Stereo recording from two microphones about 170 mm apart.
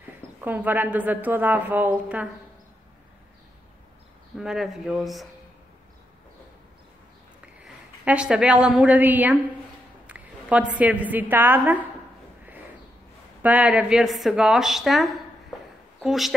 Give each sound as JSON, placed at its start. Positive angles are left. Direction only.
{"t": 0.4, "sound": "a woman's voice", "side_deg": -10}
{"t": 4.4, "sound": "a woman's voice", "side_deg": 0}
{"t": 7.6, "sound": "a woman's voice", "side_deg": -5}
{"t": 10.0, "sound": "a sound", "side_deg": -10}
{"t": 10.8, "sound": "a woman's voice", "side_deg": -10}
{"t": 13.4, "sound": "a woman's voice", "side_deg": -10}